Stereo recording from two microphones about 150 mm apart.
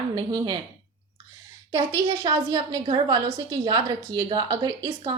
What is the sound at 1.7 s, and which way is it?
A woman's voice, 30° right (ahead or behind).